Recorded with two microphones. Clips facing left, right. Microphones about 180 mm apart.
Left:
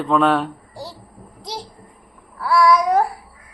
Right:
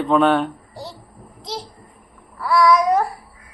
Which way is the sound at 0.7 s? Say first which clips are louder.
Even; 10° left (ahead or behind).